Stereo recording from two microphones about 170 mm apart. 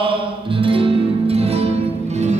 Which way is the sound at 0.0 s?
30° right (ahead or behind).